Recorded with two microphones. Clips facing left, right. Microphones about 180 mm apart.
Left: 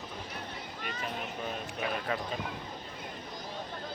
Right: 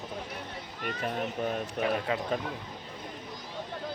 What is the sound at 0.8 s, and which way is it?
Speech, 50° right (ahead or behind).